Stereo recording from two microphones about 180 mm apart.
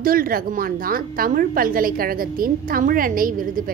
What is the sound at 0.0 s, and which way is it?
A woman's voice, 55° right (ahead or behind).